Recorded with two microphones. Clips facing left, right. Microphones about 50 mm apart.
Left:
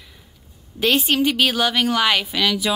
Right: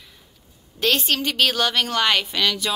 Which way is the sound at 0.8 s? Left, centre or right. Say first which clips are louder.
Left 3 dB; centre.